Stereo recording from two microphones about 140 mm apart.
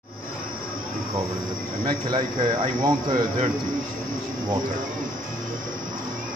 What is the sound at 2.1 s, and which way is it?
Speech, 35° right (ahead or behind).